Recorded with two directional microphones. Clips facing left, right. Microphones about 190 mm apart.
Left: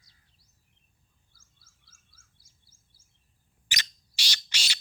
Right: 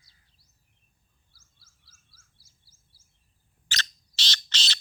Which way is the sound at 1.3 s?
50° left (ahead or behind).